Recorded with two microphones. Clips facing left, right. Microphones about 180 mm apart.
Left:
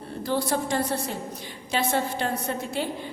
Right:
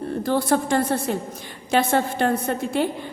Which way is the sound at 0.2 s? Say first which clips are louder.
Right 4 dB; 50° right (ahead or behind).